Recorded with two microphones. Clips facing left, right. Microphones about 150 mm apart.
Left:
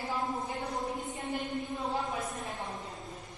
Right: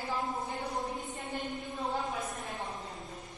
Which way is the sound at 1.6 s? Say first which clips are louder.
Left 2 dB; centre (ahead or behind).